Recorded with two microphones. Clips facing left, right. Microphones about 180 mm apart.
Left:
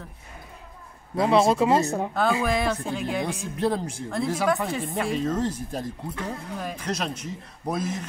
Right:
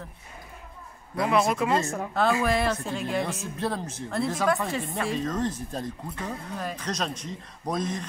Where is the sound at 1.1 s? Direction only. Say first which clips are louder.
Left 4 dB; 25° left (ahead or behind).